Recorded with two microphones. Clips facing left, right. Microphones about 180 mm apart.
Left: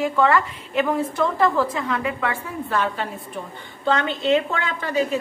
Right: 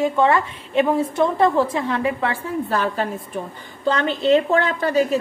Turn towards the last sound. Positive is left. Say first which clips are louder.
# right 4 dB
turn(degrees=-40)  # may be behind; listen again after turning